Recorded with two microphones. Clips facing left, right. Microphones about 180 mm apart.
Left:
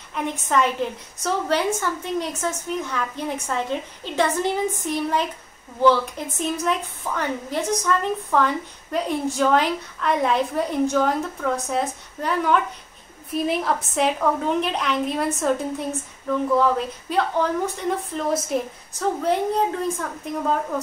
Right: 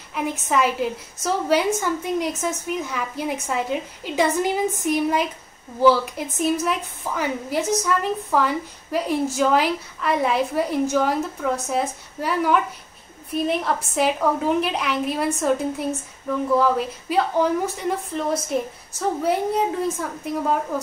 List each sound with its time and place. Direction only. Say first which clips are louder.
0.1 s a woman's voice: even; 5° right (ahead or behind)